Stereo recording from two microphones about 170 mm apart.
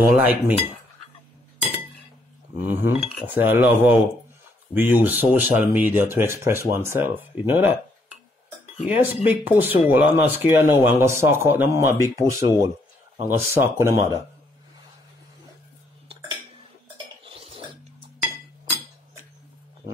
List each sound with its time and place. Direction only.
0.2 s speech: 10° right (ahead or behind)
2.6 s speech: 10° right (ahead or behind)
8.8 s speech: 10° right (ahead or behind)
17.2 s dishes: 30° right (ahead or behind)